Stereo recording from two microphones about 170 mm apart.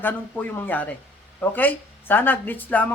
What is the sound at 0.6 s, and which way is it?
A woman's voice, 10° left (ahead or behind).